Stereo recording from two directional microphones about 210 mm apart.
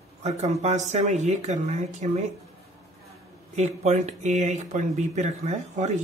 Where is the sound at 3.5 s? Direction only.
35° right (ahead or behind).